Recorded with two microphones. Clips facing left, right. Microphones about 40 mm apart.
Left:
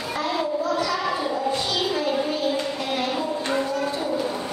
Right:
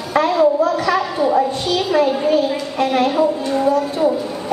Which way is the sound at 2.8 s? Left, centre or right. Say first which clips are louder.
Right 10 dB; right.